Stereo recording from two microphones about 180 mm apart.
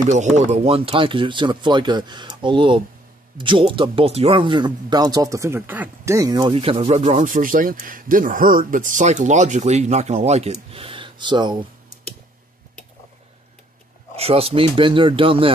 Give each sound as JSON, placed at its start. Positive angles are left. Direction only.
{"t": 0.0, "sound": "speech", "side_deg": -40}
{"t": 14.1, "sound": "speech", "side_deg": -35}